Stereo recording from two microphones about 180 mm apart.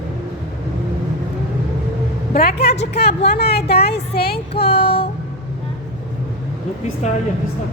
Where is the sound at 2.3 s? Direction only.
60° left (ahead or behind).